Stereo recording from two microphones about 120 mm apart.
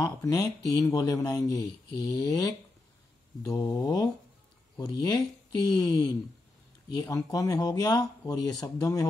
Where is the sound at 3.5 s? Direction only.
35° left (ahead or behind).